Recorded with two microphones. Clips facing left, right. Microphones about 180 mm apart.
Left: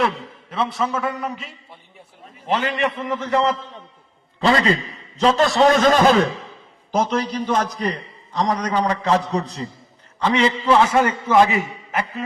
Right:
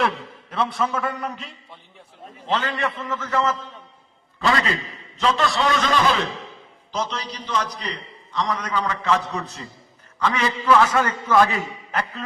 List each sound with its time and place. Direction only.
0.5 s a man's voice: 5° left (ahead or behind)
2.5 s a man's voice: 10° left (ahead or behind); by 4.8 s 25° left (ahead or behind)
5.2 s a man's voice: 40° left (ahead or behind)
11.0 s a man's voice: 10° left (ahead or behind)